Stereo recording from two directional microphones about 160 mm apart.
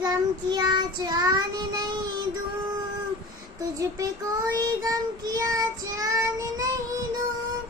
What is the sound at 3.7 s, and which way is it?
Child singing, 20° right (ahead or behind).